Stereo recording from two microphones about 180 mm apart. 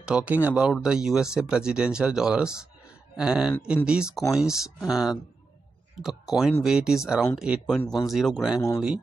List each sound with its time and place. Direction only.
0.0 s speech: 5° right (ahead or behind)
8.5 s speech: 15° left (ahead or behind)